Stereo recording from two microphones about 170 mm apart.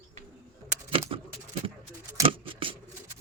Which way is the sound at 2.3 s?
30° right (ahead or behind).